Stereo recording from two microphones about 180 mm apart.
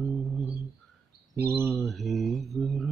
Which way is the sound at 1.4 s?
10° right (ahead or behind).